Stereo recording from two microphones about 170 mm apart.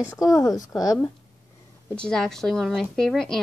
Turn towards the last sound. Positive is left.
turn(degrees=5)  # may be behind; listen again after turning